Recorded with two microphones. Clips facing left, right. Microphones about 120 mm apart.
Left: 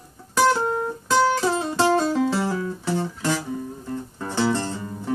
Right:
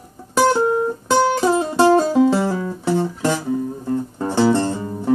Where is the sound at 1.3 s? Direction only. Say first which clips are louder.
Right 6 dB; 20° right (ahead or behind).